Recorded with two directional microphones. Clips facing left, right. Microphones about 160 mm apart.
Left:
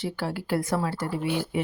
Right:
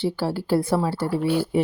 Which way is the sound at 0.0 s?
30° right (ahead or behind).